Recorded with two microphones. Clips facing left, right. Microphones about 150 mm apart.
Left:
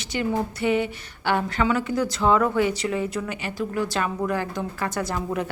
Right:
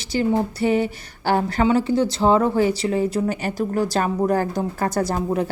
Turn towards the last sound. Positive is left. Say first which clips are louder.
# right 5 dB
turn(degrees=-35)  # may be behind; listen again after turning